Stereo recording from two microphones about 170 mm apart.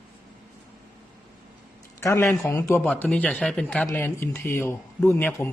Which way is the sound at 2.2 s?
Centre (ahead or behind).